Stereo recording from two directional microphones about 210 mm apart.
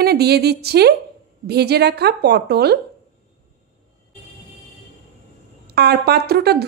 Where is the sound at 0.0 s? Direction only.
50° right (ahead or behind).